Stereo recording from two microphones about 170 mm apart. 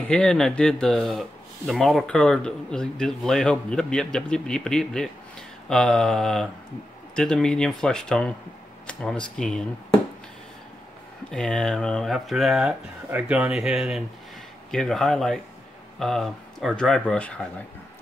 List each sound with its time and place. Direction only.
0.1 s speech: 5° left (ahead or behind)
11.2 s speech: 5° left (ahead or behind)